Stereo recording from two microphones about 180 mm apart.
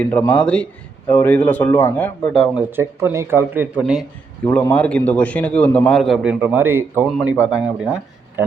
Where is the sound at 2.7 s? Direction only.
15° right (ahead or behind).